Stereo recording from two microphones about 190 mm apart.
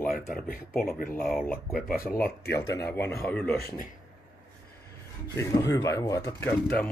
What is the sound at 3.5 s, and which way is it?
Speech, 55° left (ahead or behind).